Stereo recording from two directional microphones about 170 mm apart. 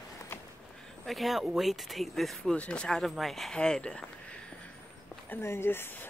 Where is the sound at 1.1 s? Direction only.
Centre (ahead or behind).